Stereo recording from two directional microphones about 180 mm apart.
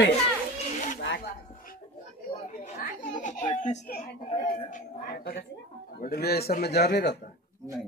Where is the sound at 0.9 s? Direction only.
80° left.